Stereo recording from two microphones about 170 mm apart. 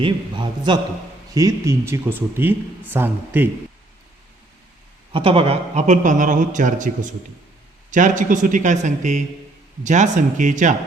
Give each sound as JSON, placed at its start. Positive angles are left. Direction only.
{"t": 0.0, "sound": "a man's voice", "side_deg": -25}
{"t": 5.1, "sound": "a man's voice", "side_deg": -35}